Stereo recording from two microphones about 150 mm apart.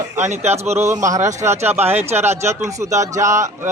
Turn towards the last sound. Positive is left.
turn(degrees=-20)  # may be behind; listen again after turning